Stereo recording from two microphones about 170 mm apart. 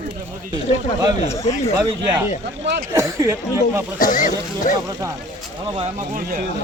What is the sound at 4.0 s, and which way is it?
Speech, 50° left (ahead or behind).